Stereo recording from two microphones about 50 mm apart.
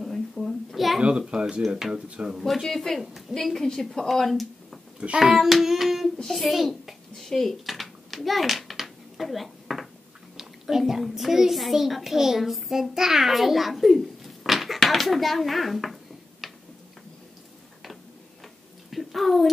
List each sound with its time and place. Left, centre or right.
0.0 s a sound: centre
1.0 s a child's voice: centre
2.3 s a woman's voice: centre
3.0 s a woman's voice: centre
3.3 s a woman's voice: centre
9.2 s dishes: centre
10.3 s a child's voice: centre
18.9 s a sound: centre